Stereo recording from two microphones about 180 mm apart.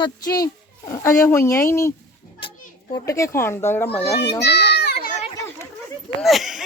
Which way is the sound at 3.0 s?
15° left (ahead or behind).